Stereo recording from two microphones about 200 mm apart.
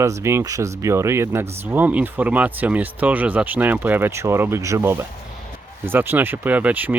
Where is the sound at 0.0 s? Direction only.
15° right (ahead or behind).